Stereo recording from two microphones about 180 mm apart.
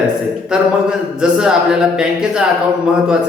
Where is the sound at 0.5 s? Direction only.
5° right (ahead or behind).